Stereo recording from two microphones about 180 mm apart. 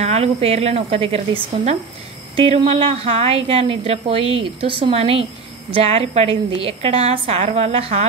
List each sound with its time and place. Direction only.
0.0 s speech: 35° right (ahead or behind)